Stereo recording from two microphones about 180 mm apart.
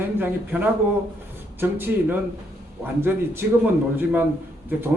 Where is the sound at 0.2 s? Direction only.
10° right (ahead or behind).